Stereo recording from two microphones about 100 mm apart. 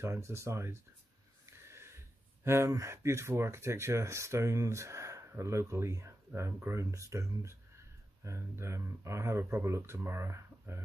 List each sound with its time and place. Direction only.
0.0 s speech: 25° right (ahead or behind)
1.4 s a sound: 25° right (ahead or behind)
2.4 s speech: 25° right (ahead or behind)